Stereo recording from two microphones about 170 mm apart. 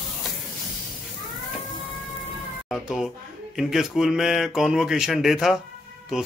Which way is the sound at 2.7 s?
Centre (ahead or behind).